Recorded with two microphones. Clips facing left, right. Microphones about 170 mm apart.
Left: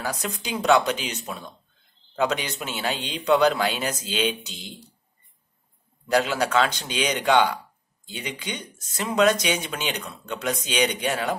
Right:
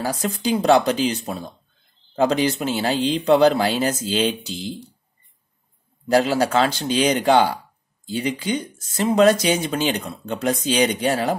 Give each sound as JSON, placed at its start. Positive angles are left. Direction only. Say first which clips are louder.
{"t": 0.0, "sound": "speech", "louder": "right 7 dB", "side_deg": -30}
{"t": 6.1, "sound": "speech", "louder": "right 4 dB", "side_deg": -30}